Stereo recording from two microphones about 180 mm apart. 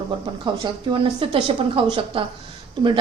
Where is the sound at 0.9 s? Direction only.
30° right (ahead or behind).